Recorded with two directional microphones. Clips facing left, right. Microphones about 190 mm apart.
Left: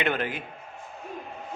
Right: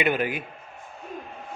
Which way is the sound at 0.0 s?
10° right (ahead or behind).